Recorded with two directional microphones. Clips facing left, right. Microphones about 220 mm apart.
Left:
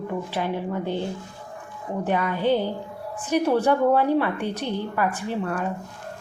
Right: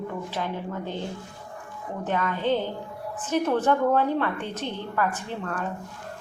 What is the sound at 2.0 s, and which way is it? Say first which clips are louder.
A woman's voice: left 3 dB; 10° left (ahead or behind).